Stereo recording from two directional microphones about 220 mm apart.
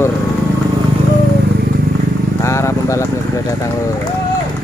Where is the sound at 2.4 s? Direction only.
15° left (ahead or behind).